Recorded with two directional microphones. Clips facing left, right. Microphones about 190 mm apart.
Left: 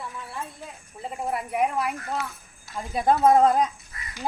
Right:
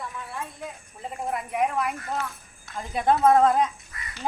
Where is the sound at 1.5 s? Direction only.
5° left (ahead or behind).